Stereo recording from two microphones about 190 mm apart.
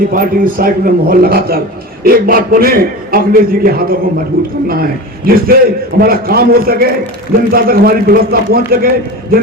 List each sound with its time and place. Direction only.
0.1 s a man's voice: 50° right (ahead or behind)